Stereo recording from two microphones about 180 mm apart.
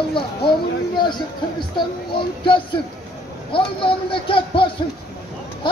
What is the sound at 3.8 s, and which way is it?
Speech, 30° left (ahead or behind).